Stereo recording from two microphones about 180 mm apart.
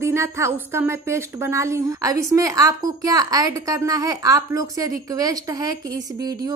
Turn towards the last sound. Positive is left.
turn(degrees=-20)  # may be behind; listen again after turning